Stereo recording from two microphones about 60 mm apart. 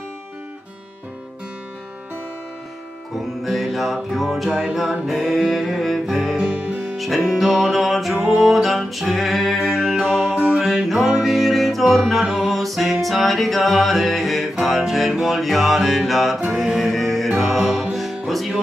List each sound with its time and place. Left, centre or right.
3.4 s music: centre
6.3 s music: centre
7.0 s music: centre